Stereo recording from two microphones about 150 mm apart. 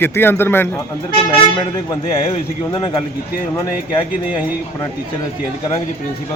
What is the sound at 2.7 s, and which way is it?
Speech, 30° left (ahead or behind).